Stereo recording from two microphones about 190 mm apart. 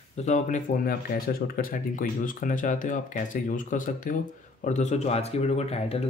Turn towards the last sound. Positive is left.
turn(degrees=35)  # may be behind; listen again after turning